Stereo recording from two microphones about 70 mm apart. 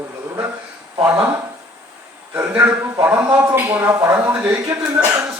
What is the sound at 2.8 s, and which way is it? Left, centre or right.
Speech, right.